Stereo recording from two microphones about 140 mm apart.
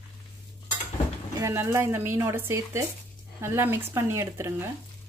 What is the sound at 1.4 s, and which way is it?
Speech, 20° right (ahead or behind).